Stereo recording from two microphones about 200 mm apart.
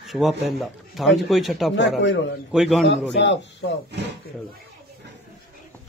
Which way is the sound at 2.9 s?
60° left (ahead or behind).